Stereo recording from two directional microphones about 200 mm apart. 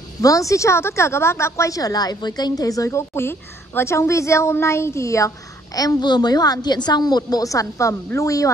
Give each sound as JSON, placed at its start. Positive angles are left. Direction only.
{"t": 0.2, "sound": "a woman's voice", "side_deg": 15}